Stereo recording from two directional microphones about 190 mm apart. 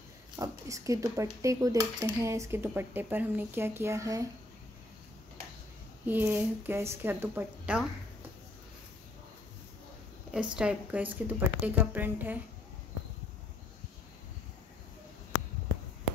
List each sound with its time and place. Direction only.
0.4 s speech: 15° right (ahead or behind)
6.0 s speech: 10° right (ahead or behind)
10.5 s speech: 5° right (ahead or behind)